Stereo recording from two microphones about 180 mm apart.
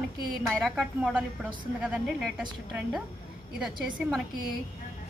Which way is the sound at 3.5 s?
Centre (ahead or behind).